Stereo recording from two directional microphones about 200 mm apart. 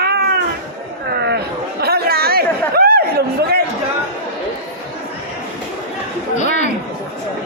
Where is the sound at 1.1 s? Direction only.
55° right (ahead or behind).